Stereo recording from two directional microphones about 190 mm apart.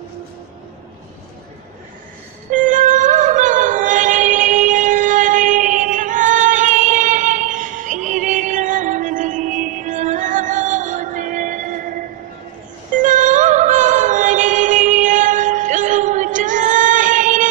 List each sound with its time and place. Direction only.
2.5 s music: 40° right (ahead or behind)
13.0 s music: 40° right (ahead or behind)